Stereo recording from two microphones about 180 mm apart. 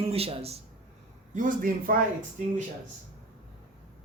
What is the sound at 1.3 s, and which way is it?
Speech, 50° right (ahead or behind).